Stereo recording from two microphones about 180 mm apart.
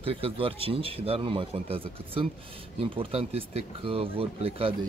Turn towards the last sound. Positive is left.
turn(degrees=-30)  # may be behind; listen again after turning